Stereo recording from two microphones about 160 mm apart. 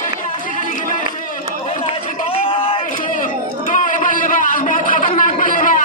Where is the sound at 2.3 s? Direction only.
35° left (ahead or behind).